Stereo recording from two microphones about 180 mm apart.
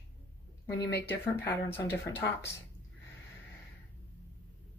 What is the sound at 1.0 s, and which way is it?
Speech, 10° left (ahead or behind).